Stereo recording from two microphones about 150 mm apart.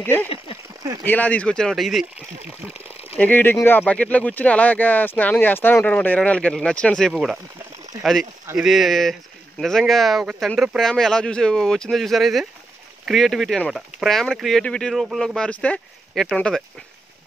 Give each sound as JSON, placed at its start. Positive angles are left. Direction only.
{"t": 0.0, "sound": "speech", "side_deg": 15}
{"t": 2.7, "sound": "a sound", "side_deg": 45}
{"t": 3.2, "sound": "speech", "side_deg": 10}